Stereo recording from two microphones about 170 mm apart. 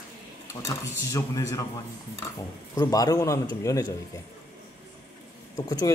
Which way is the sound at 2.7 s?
20° left (ahead or behind).